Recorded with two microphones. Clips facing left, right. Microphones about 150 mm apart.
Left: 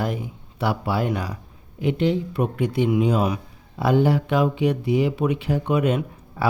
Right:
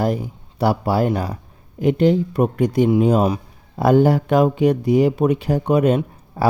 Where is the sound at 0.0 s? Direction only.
35° right (ahead or behind).